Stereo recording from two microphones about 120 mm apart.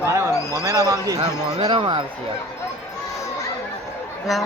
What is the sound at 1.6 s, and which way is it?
Speech, 40° right (ahead or behind).